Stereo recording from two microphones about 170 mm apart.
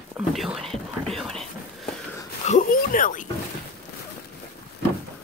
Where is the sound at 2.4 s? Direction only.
50° left (ahead or behind).